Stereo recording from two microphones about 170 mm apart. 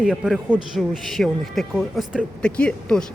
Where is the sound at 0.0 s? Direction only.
5° right (ahead or behind).